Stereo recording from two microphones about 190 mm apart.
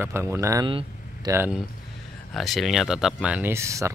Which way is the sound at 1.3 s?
10° right (ahead or behind).